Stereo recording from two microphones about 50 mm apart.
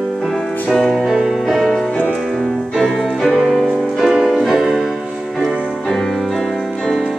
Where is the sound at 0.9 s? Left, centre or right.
Centre.